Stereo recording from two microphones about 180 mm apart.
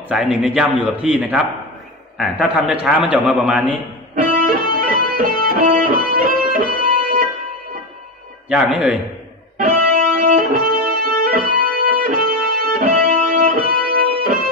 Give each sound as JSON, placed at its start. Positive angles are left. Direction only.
{"t": 0.1, "sound": "a man's voice", "side_deg": -5}
{"t": 4.1, "sound": "music", "side_deg": -50}
{"t": 8.5, "sound": "a man's voice", "side_deg": -5}
{"t": 9.6, "sound": "music", "side_deg": -50}